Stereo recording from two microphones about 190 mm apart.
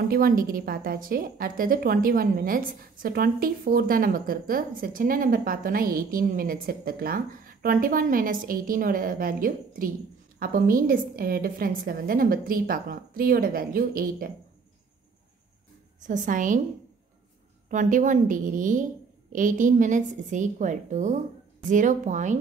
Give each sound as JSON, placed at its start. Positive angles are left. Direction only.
{"t": 0.1, "sound": "a woman's voice", "side_deg": -50}
{"t": 16.0, "sound": "a woman's voice", "side_deg": -40}
{"t": 17.6, "sound": "a woman's voice", "side_deg": -45}